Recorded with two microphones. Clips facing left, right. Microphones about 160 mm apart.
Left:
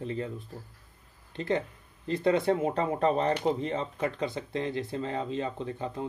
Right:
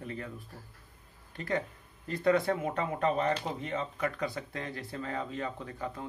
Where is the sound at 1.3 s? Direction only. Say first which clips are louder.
Left 4 dB; 25° left (ahead or behind).